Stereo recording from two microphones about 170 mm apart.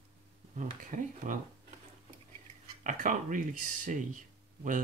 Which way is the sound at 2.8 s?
50° right (ahead or behind).